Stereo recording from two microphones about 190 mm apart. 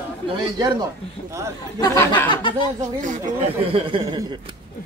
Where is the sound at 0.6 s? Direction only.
20° right (ahead or behind).